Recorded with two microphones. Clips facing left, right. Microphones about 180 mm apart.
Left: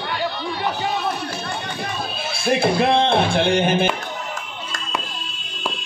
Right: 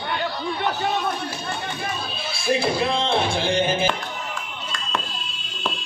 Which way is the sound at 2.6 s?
65° left (ahead or behind).